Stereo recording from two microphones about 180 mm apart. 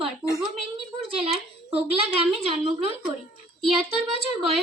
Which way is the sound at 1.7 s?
30° right (ahead or behind).